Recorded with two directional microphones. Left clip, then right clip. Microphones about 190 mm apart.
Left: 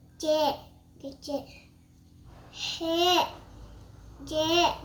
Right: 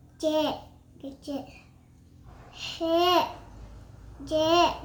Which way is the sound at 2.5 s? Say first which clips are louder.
Right 3 dB; 15° right (ahead or behind).